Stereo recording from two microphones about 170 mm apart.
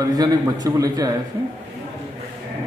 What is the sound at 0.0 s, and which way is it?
A man's voice, 20° right (ahead or behind).